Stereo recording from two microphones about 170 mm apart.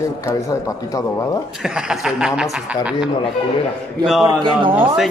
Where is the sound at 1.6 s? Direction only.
5° right (ahead or behind).